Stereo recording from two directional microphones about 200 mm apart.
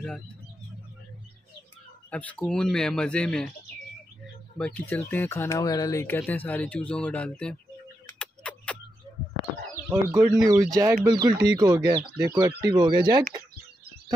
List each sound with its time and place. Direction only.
2.0 s speech: 5° left (ahead or behind)
4.6 s speech: 5° left (ahead or behind)
8.2 s a sound: 5° left (ahead or behind)
9.8 s speech: 10° right (ahead or behind)